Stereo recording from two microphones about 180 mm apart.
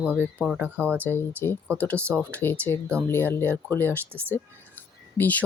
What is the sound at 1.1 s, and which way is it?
Speech, 10° left (ahead or behind).